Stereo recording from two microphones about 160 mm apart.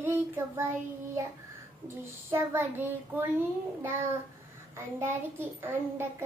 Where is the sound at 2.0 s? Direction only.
15° right (ahead or behind).